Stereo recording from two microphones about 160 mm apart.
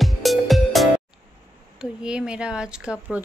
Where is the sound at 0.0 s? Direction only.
Centre (ahead or behind).